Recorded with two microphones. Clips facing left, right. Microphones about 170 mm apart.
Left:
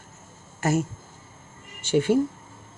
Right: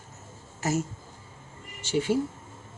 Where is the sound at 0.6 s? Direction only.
60° left (ahead or behind).